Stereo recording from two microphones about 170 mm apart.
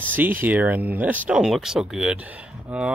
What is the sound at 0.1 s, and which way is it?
Speech, 10° right (ahead or behind).